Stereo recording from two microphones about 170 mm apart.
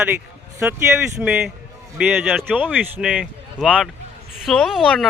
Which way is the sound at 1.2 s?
Centre (ahead or behind).